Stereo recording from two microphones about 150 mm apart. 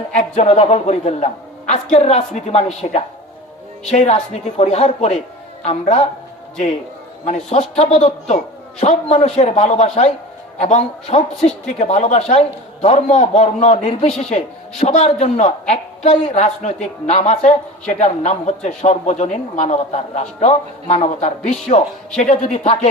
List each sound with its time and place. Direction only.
0.2 s a man's voice: 45° left (ahead or behind)
3.8 s a man's voice: 45° left (ahead or behind)
7.3 s a man's voice: 45° left (ahead or behind)